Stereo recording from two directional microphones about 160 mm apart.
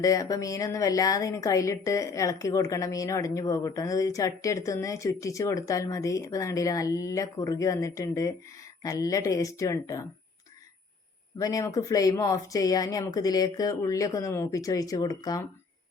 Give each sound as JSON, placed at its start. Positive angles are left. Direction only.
{"t": 0.0, "sound": "a woman's voice", "side_deg": 20}
{"t": 11.3, "sound": "a woman's voice", "side_deg": 20}